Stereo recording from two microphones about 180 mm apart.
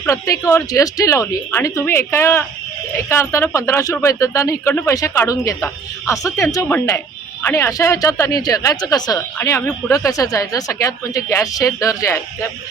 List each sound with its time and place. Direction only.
0.0 s speech: 15° left (ahead or behind)